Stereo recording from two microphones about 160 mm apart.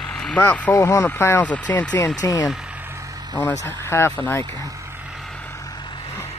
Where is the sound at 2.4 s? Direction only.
5° right (ahead or behind).